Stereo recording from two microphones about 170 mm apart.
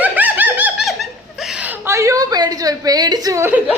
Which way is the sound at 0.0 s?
10° right (ahead or behind).